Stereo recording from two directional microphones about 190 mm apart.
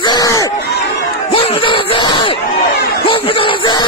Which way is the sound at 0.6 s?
60° left (ahead or behind).